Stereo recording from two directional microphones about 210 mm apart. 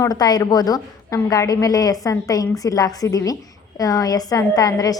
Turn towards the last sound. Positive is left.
turn(degrees=15)  # may be behind; listen again after turning